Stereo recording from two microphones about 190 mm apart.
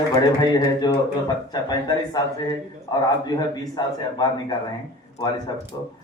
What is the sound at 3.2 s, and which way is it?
A man's voice, 20° left (ahead or behind).